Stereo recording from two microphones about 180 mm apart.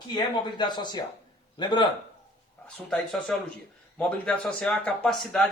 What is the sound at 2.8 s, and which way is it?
A man's voice, 5° left (ahead or behind).